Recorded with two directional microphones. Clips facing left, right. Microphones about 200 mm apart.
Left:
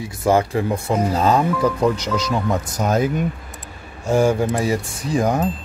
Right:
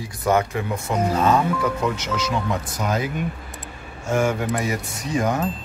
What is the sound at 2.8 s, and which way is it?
Speech, 50° left (ahead or behind).